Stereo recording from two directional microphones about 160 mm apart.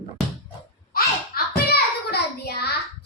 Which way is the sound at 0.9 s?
75° left (ahead or behind).